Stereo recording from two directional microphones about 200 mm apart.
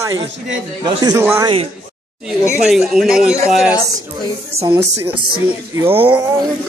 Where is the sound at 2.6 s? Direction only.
Centre (ahead or behind).